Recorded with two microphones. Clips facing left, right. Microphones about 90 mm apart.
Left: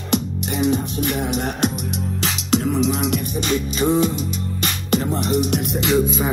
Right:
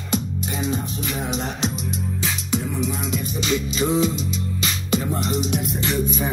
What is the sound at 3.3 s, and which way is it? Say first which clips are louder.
Music: right 2 dB; 50° left (ahead or behind).